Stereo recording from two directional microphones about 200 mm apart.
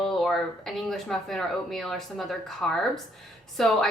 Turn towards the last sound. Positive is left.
turn(degrees=0)  # may be behind; listen again after turning